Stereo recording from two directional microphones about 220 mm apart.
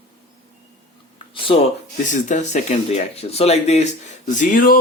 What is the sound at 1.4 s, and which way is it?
Speech, 25° left (ahead or behind).